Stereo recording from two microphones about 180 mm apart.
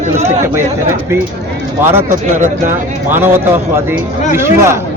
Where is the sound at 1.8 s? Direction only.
15° right (ahead or behind).